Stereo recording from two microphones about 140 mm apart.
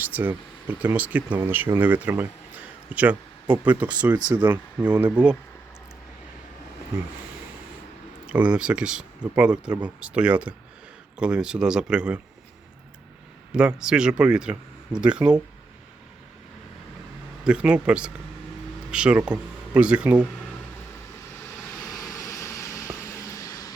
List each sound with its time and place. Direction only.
0.0 s speech: 10° right (ahead or behind)
8.3 s speech: 10° right (ahead or behind)
13.5 s speech: 5° right (ahead or behind)
17.4 s speech: 5° right (ahead or behind)
21.9 s vehicle: 25° left (ahead or behind)